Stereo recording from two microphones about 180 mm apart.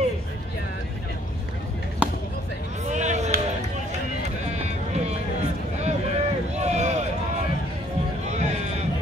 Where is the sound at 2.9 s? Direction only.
40° right (ahead or behind).